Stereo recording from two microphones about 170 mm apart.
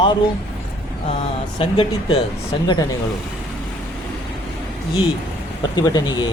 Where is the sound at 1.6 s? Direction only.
30° left (ahead or behind).